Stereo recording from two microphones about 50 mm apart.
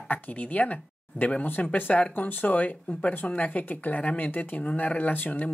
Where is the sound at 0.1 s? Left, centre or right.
Left.